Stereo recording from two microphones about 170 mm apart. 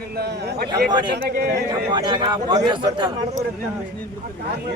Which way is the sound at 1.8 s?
25° right (ahead or behind).